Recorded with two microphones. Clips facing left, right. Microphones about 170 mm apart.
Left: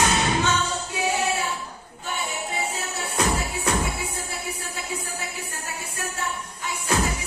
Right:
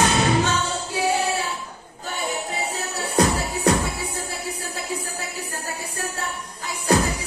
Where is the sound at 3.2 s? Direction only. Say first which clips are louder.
Right 6 dB; 35° right (ahead or behind).